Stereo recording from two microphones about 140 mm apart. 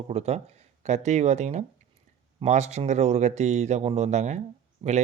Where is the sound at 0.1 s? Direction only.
50° right (ahead or behind).